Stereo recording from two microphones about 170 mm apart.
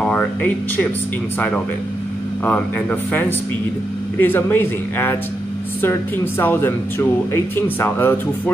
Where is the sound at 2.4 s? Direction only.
10° left (ahead or behind).